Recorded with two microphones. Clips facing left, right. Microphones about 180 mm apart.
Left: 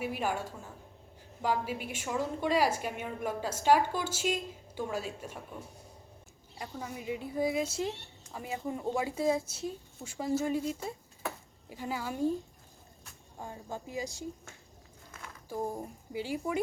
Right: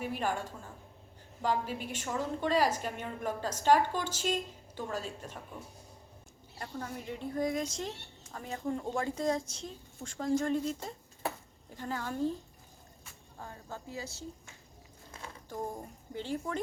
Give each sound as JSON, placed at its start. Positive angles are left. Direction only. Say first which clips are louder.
{"t": 0.0, "sound": "a woman's voice", "louder": "left 1 dB", "side_deg": 10}
{"t": 6.6, "sound": "a woman's voice", "louder": "even", "side_deg": 10}
{"t": 13.4, "sound": "a woman's voice", "louder": "left 4 dB", "side_deg": 15}
{"t": 15.4, "sound": "a woman's voice", "louder": "left 4 dB", "side_deg": 10}